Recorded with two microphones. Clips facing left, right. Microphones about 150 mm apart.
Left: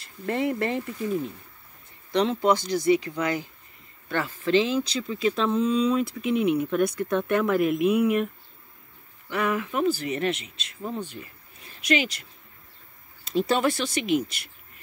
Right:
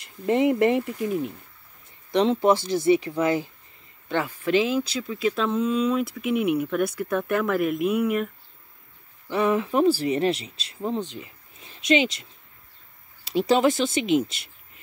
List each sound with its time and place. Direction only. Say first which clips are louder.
0.0 s speech: right 5 dB; 20° right (ahead or behind)
4.1 s speech: even; 10° right (ahead or behind)
9.3 s speech: right 4 dB; 30° right (ahead or behind)
11.0 s speech: right 3 dB; 20° right (ahead or behind)
13.5 s speech: right 6 dB; 20° right (ahead or behind)